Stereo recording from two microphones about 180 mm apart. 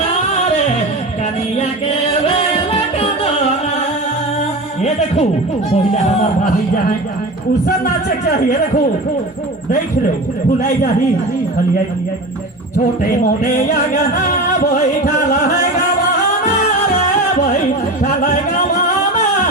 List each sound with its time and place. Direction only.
4.8 s a man's voice: 40° left (ahead or behind)
8.2 s music: 45° left (ahead or behind)
13.0 s music: 45° left (ahead or behind)
17.0 s music: 40° left (ahead or behind)